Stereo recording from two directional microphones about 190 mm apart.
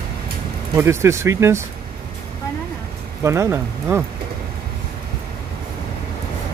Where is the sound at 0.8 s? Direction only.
15° right (ahead or behind).